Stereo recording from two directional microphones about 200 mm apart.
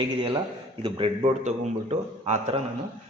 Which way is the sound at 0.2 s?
25° right (ahead or behind).